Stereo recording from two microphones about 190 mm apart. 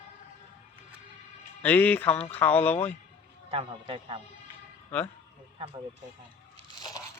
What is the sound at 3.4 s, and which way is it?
Speech, 30° right (ahead or behind).